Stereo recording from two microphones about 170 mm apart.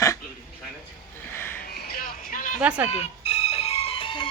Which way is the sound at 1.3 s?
15° left (ahead or behind).